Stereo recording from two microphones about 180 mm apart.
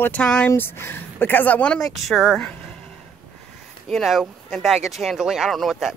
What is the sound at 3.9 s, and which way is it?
Speech, centre (ahead or behind).